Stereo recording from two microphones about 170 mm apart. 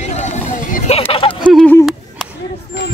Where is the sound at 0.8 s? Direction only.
35° left (ahead or behind).